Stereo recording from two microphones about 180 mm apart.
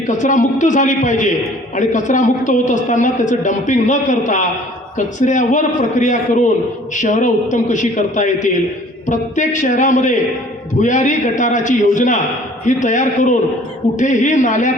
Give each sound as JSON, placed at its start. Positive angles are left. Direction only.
{"t": 0.2, "sound": "a man's voice", "side_deg": 45}